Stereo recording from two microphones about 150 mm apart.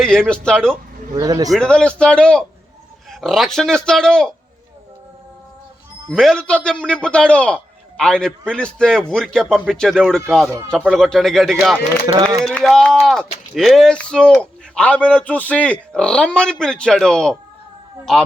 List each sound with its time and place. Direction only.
0.0 s a man's voice: 5° left (ahead or behind)
1.1 s speech: 25° right (ahead or behind)
1.5 s a man's voice: 5° left (ahead or behind)
6.1 s a man's voice: 5° left (ahead or behind)
12.0 s speech: 25° right (ahead or behind)
12.5 s a man's voice: centre (ahead or behind)